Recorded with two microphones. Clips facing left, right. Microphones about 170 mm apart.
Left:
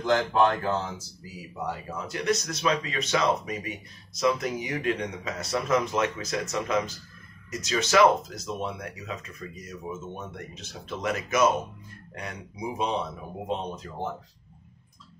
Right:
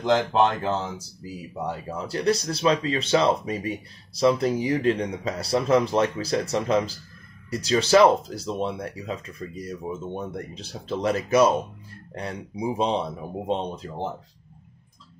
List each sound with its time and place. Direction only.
0.0 s speech: 20° right (ahead or behind)
1.9 s speech: 35° right (ahead or behind)